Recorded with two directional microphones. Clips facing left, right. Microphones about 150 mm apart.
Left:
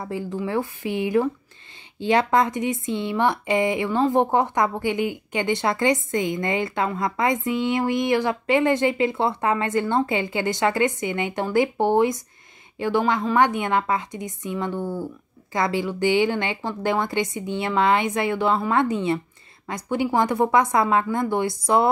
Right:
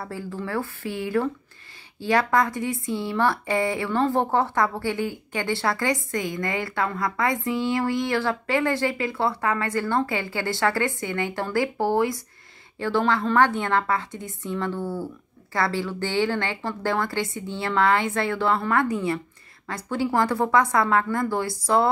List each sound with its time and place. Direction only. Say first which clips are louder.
0.0 s a woman's voice: left 4 dB; 15° left (ahead or behind)